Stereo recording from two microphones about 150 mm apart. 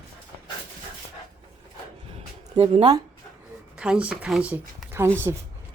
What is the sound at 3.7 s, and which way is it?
Speech, 5° right (ahead or behind).